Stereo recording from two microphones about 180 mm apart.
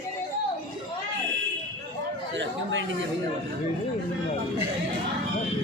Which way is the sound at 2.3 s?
90° right.